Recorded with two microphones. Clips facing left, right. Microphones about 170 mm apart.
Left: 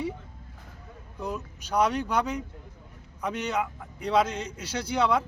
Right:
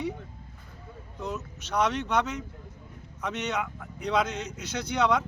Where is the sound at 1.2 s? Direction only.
10° left (ahead or behind).